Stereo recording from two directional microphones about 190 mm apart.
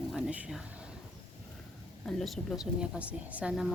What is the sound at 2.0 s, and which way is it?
A woman's voice, centre (ahead or behind).